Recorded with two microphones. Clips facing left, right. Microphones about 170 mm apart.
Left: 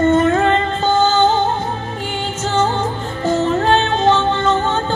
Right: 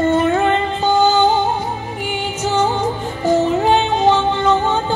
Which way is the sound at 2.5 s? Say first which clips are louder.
Even; 15° right (ahead or behind).